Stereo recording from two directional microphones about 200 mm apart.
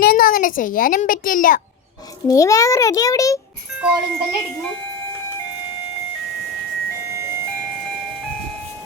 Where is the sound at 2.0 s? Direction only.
15° left (ahead or behind).